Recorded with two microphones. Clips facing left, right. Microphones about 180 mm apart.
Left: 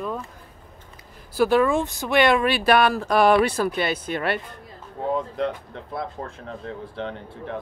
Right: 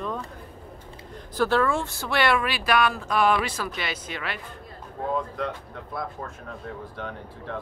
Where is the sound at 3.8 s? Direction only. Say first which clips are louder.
Left 8 dB; 50° left (ahead or behind).